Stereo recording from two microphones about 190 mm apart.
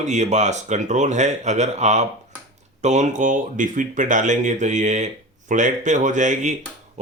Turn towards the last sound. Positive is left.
turn(degrees=-40)  # may be behind; listen again after turning